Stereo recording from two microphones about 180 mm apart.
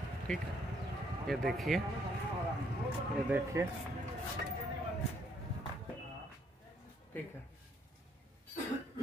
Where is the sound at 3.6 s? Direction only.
15° right (ahead or behind).